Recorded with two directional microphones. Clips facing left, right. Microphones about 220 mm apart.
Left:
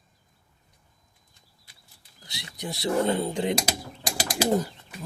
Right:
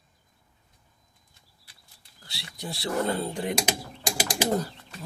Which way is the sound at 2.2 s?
20° left (ahead or behind).